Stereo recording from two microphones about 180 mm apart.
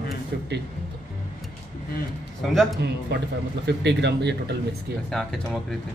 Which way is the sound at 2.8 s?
70° right (ahead or behind).